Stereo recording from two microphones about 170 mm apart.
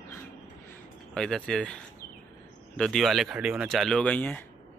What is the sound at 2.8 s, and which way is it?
Speech, centre (ahead or behind).